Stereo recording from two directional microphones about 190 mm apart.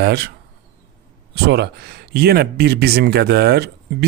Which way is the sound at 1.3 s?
55° right (ahead or behind).